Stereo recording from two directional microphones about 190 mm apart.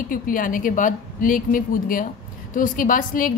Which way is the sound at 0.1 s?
45° left (ahead or behind).